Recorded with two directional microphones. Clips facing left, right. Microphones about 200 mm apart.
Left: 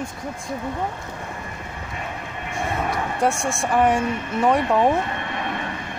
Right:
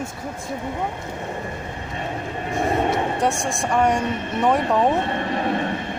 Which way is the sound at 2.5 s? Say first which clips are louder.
Right 5 dB; 35° right (ahead or behind).